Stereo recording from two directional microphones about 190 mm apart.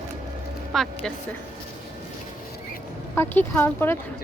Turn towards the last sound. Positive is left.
turn(degrees=10)  # may be behind; listen again after turning